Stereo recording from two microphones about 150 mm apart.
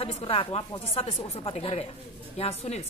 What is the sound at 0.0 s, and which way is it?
A woman's voice, 40° left (ahead or behind).